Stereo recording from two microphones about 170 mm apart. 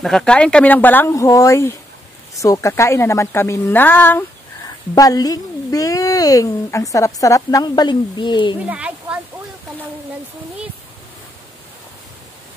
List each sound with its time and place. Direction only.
0.0 s speech: 5° left (ahead or behind)
4.9 s speech: 20° left (ahead or behind)
8.6 s a sound: 5° right (ahead or behind)